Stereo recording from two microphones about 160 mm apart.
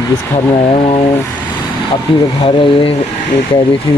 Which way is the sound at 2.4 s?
35° left (ahead or behind).